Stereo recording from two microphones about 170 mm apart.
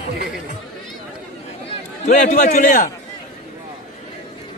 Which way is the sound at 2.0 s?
50° left (ahead or behind).